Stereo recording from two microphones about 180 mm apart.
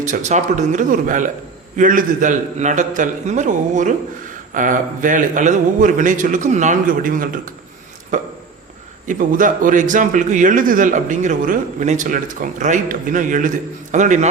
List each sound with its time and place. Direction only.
0.0 s a man's voice: 45° right (ahead or behind)
9.0 s a man's voice: 50° right (ahead or behind)